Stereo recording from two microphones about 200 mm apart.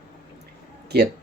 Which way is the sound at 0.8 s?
55° right (ahead or behind).